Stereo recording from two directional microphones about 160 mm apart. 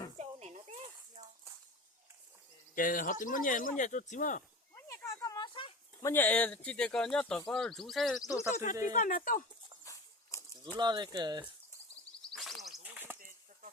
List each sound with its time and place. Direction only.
0.2 s a sound: 45° right (ahead or behind)
2.7 s speech: 60° left (ahead or behind)
4.7 s a sound: 20° left (ahead or behind)
6.0 s speech: 15° left (ahead or behind)
8.2 s speech: 20° left (ahead or behind)
8.5 s speech: 55° left (ahead or behind)
9.8 s dog: 20° left (ahead or behind)
10.8 s speech: 25° right (ahead or behind)
12.2 s a sound: centre (ahead or behind)
13.1 s bird flight: 55° right (ahead or behind)